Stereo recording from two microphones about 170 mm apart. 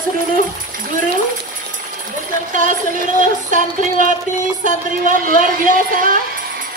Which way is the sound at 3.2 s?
50° right (ahead or behind).